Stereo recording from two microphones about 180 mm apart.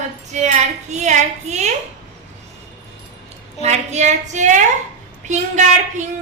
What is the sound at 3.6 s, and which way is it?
A woman's voice, 40° right (ahead or behind).